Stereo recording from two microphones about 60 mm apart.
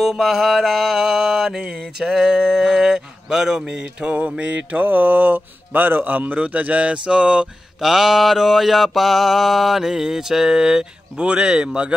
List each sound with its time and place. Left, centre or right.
0.0 s mantra: centre
7.8 s mantra: centre